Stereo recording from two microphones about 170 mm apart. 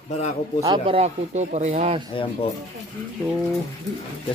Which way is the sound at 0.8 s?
40° right (ahead or behind).